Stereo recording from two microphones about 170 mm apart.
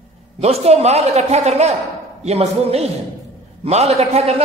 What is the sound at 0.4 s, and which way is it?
A man's voice, 35° right (ahead or behind).